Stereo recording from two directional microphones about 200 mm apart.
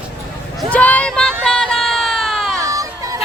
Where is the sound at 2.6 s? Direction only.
15° right (ahead or behind).